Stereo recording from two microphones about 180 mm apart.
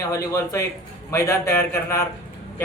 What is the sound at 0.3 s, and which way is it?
Speech, 15° left (ahead or behind).